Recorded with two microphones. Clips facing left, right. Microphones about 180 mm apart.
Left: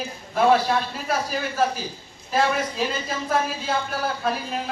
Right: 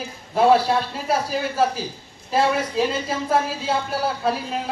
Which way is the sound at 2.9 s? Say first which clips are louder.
Right 3 dB; 30° right (ahead or behind).